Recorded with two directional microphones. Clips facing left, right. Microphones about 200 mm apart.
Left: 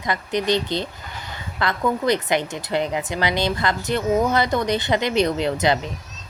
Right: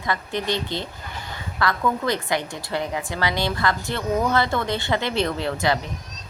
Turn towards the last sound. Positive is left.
turn(degrees=20)  # may be behind; listen again after turning